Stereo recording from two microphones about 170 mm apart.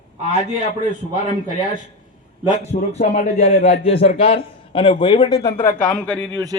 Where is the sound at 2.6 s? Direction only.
40° left (ahead or behind); by 5.5 s 20° left (ahead or behind).